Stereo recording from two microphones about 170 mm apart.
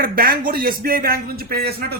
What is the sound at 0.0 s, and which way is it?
Speech, 60° right (ahead or behind).